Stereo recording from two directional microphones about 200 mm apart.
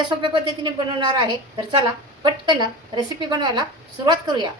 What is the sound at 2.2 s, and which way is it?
A woman's voice, 20° right (ahead or behind).